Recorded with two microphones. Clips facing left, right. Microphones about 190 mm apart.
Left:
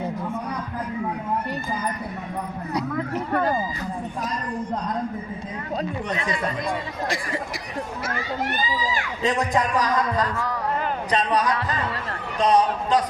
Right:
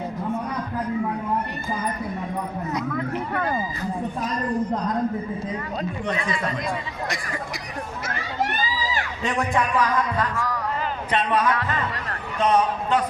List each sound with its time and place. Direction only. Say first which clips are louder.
9.4 s speech: right 3 dB; 40° left (ahead or behind)